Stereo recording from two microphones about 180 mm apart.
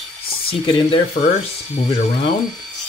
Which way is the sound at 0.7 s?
35° left (ahead or behind).